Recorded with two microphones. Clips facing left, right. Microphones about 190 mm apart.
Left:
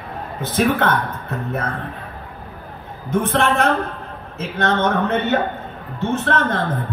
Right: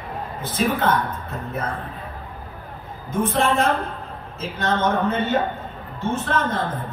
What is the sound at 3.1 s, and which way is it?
A man's voice, 70° left (ahead or behind).